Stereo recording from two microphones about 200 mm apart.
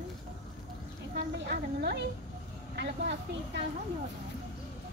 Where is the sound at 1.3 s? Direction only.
55° right (ahead or behind).